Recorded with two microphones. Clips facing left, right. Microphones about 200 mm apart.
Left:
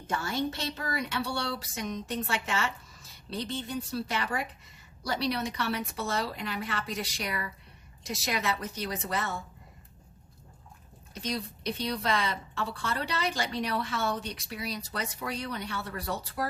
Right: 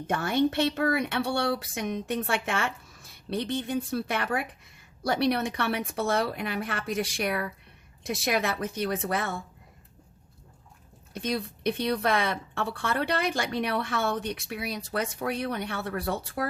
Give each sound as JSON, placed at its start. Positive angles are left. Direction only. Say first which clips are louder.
{"t": 0.1, "sound": "speech", "louder": "right 6 dB", "side_deg": -60}
{"t": 11.1, "sound": "speech", "louder": "right 4 dB", "side_deg": -55}